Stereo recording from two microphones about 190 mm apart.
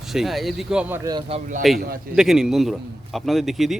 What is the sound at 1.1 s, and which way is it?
Speech, 25° right (ahead or behind).